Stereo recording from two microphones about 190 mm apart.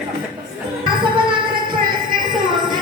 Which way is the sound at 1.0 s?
25° right (ahead or behind).